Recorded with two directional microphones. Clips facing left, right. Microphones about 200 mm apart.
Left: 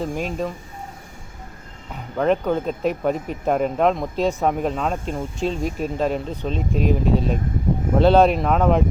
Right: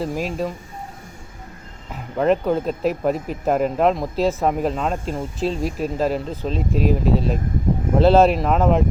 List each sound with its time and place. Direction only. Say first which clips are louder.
0.0 s speech: right 1 dB; 5° right (ahead or behind)
1.9 s speech: right 1 dB; centre (ahead or behind)